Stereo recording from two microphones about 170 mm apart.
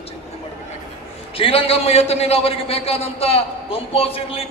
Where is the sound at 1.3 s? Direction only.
30° left (ahead or behind).